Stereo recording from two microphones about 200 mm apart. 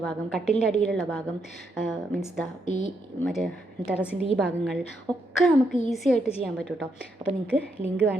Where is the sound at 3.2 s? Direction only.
Centre (ahead or behind).